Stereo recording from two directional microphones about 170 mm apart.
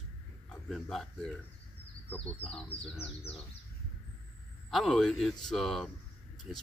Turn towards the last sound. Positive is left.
turn(degrees=0)  # may be behind; listen again after turning